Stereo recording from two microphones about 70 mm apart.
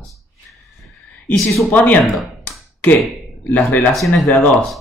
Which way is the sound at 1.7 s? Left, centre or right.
Left.